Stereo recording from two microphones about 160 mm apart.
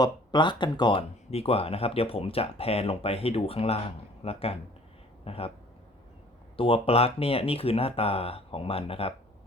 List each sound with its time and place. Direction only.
0.0 s speech: 25° left (ahead or behind)
6.6 s speech: 35° left (ahead or behind)